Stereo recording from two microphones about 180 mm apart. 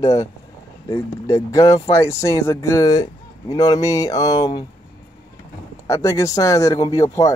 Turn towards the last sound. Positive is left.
turn(degrees=20)  # may be behind; listen again after turning